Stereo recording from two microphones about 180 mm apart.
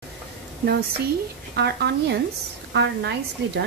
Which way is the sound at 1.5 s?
65° right (ahead or behind).